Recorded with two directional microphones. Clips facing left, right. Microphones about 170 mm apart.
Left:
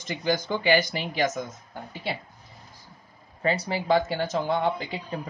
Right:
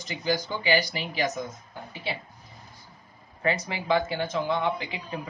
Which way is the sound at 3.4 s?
30° left (ahead or behind).